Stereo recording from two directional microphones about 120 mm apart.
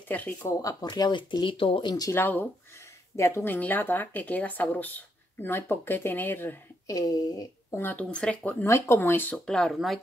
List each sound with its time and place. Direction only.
0.1 s speech: 15° left (ahead or behind)
0.5 s speech: 30° left (ahead or behind)
2.0 s speech: 15° left (ahead or behind)
6.9 s speech: 30° left (ahead or behind)
7.7 s speech: 15° left (ahead or behind)
8.6 s speech: 25° left (ahead or behind)
9.5 s speech: 5° left (ahead or behind)